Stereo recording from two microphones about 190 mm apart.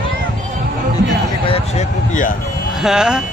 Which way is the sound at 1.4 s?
30° left (ahead or behind).